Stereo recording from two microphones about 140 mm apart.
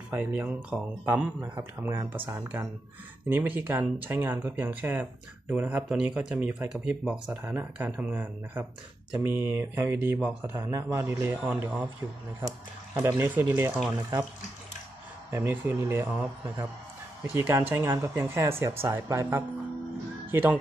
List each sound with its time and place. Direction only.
0.1 s speech: 15° right (ahead or behind)
11.5 s speech: 5° right (ahead or behind)
12.9 s speech: 15° right (ahead or behind)
15.3 s speech: 20° right (ahead or behind)